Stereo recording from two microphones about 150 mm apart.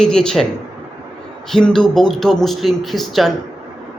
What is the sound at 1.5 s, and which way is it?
A man's voice, 5° left (ahead or behind).